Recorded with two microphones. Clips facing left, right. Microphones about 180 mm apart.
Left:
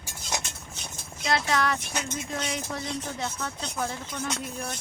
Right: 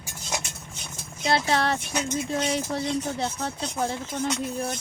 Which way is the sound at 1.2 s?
30° right (ahead or behind).